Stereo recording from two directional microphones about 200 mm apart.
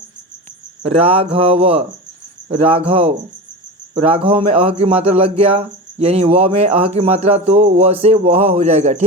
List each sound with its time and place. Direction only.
0.8 s a man's voice: 30° right (ahead or behind)